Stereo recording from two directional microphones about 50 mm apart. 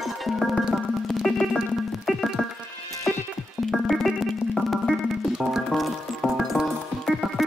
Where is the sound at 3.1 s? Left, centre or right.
Centre.